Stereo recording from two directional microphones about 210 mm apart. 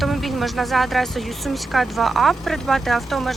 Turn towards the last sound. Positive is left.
turn(degrees=0)  # may be behind; listen again after turning